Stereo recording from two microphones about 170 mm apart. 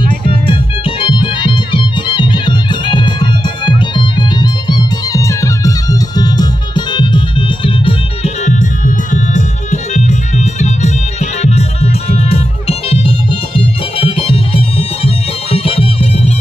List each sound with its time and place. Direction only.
0.5 s music: 30° left (ahead or behind)
8.5 s music: 50° left (ahead or behind)